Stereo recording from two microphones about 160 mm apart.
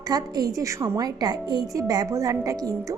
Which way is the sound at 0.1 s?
25° right (ahead or behind).